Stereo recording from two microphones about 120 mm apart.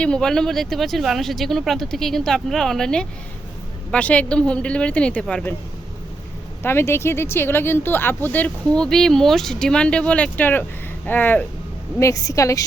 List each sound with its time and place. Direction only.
0.0 s speech: 5° left (ahead or behind)
6.6 s speech: 20° left (ahead or behind)
11.9 s a woman's voice: 25° left (ahead or behind)